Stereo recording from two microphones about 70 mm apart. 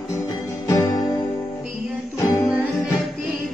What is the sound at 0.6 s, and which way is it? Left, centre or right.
Music, left.